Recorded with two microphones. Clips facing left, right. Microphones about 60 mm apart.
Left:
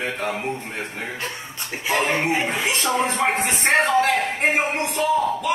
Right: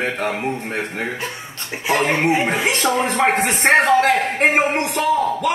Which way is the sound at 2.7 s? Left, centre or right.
Right.